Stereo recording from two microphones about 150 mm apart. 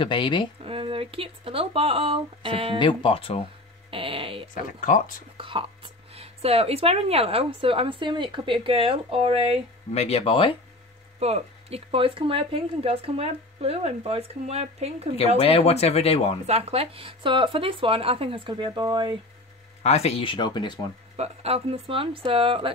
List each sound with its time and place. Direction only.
0.0 s speech: 35° left (ahead or behind)
0.7 s speech: 40° right (ahead or behind)
2.8 s speech: 35° left (ahead or behind)
3.9 s a sound: 35° right (ahead or behind)
4.7 s speech: 65° left (ahead or behind)
5.4 s speech: 35° right (ahead or behind)
9.9 s speech: 45° left (ahead or behind)
11.1 s speech: 45° right (ahead or behind)
15.3 s speech: 40° left (ahead or behind)
16.4 s speech: 45° right (ahead or behind)
19.8 s speech: 45° left (ahead or behind); by 20.8 s 30° left (ahead or behind)
21.2 s speech: 45° right (ahead or behind)